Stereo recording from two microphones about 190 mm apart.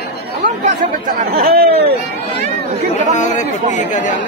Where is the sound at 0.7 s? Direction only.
50° right (ahead or behind).